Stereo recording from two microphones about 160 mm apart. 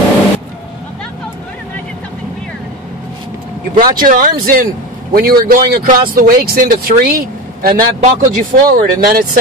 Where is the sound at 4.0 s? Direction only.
60° right (ahead or behind).